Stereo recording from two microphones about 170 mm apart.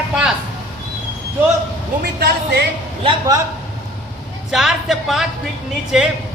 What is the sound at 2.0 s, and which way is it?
Speech, 70° right (ahead or behind).